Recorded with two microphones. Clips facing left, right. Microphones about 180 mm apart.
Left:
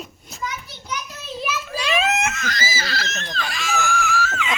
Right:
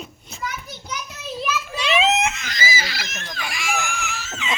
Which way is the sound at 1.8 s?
20° right (ahead or behind).